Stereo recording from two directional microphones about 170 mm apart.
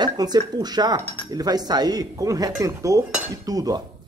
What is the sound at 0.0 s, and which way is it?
A woman's voice, 25° right (ahead or behind).